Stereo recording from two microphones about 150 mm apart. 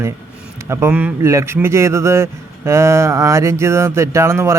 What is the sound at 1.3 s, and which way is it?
Speech, 20° right (ahead or behind).